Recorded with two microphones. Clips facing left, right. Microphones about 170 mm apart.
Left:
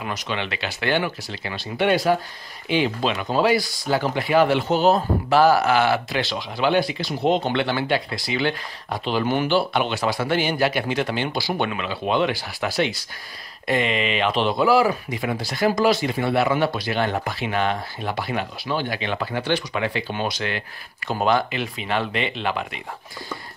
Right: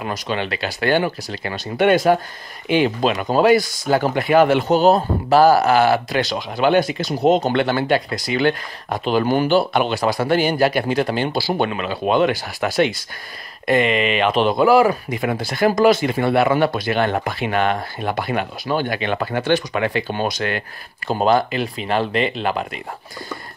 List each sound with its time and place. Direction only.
0.0 s speech: 40° right (ahead or behind)
21.1 s speech: 35° right (ahead or behind)